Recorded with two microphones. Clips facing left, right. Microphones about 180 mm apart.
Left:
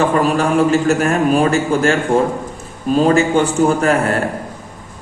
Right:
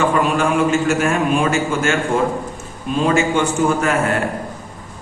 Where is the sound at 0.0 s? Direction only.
40° left (ahead or behind).